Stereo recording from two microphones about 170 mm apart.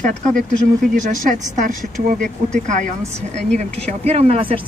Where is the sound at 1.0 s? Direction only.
45° right (ahead or behind).